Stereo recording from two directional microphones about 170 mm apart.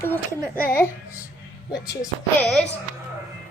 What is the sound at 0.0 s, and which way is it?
Speech, 10° left (ahead or behind).